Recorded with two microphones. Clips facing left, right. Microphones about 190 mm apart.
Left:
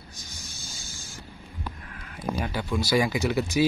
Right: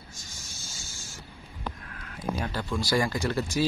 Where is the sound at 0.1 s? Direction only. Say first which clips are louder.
Left 2 dB; 20° left (ahead or behind).